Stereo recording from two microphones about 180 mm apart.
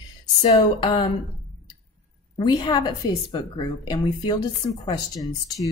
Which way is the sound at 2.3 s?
25° left (ahead or behind).